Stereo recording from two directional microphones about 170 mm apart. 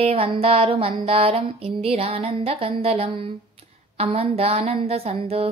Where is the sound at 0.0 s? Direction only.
35° right (ahead or behind).